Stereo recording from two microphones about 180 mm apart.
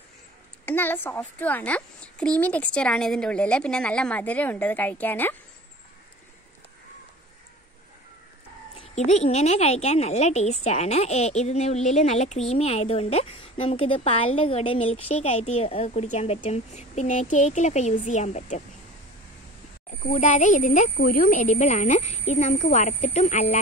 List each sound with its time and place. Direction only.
0.7 s a child's voice: 10° left (ahead or behind)
8.7 s a woman's voice: 35° left (ahead or behind)
20.1 s a child's voice: 40° left (ahead or behind)